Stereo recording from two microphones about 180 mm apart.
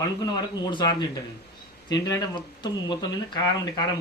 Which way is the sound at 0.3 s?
25° left (ahead or behind).